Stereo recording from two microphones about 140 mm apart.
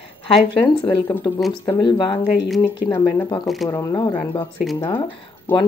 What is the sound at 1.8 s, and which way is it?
Speech, 35° left (ahead or behind).